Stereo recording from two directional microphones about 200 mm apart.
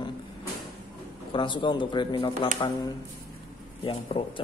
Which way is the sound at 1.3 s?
25° left (ahead or behind).